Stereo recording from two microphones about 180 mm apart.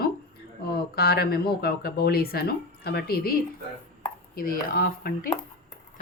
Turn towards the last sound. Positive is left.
turn(degrees=55)  # may be behind; listen again after turning